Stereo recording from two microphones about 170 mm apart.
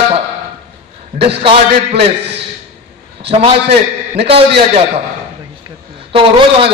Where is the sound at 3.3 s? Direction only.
35° right (ahead or behind).